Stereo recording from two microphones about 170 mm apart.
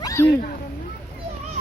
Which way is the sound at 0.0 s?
20° left (ahead or behind).